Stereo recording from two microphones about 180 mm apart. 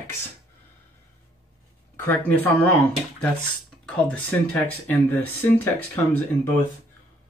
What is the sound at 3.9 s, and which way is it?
Speech, 10° left (ahead or behind).